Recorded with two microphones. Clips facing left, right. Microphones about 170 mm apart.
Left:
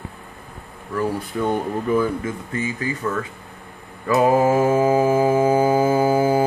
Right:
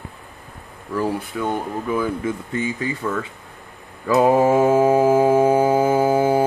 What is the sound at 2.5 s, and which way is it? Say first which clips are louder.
Speech: left 1 dB; 25° right (ahead or behind).